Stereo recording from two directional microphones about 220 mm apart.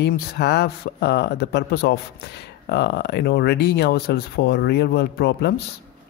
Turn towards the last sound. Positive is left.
turn(degrees=45)  # may be behind; listen again after turning